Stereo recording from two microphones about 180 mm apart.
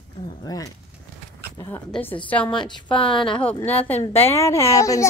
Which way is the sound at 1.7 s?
10° left (ahead or behind).